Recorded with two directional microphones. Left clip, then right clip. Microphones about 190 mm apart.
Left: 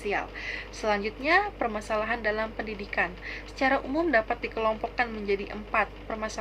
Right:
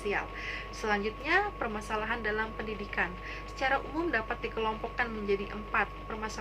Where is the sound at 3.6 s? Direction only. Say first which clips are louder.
Left 5 dB; 20° left (ahead or behind).